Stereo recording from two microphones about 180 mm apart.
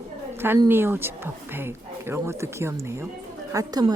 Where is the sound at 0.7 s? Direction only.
10° right (ahead or behind).